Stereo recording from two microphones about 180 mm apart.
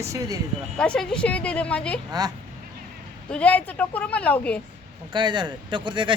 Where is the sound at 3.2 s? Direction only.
5° left (ahead or behind).